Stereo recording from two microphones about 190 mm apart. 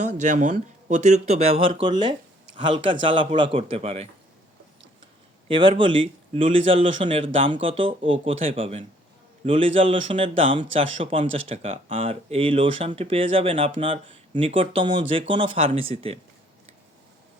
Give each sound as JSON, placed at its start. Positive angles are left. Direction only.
{"t": 0.0, "sound": "speech", "side_deg": -40}
{"t": 5.5, "sound": "speech", "side_deg": -25}